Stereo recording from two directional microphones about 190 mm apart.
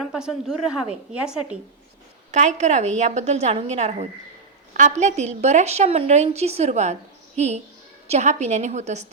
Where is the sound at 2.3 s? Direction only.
35° right (ahead or behind).